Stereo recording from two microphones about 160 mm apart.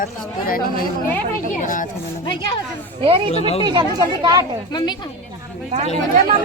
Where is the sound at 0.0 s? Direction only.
60° left (ahead or behind).